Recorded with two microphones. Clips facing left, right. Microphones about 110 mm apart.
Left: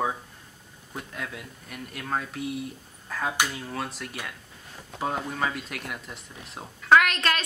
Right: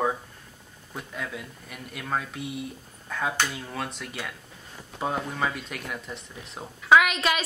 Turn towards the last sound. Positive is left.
turn(degrees=-5)  # may be behind; listen again after turning